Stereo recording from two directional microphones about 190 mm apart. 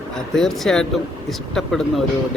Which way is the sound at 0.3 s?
Centre (ahead or behind).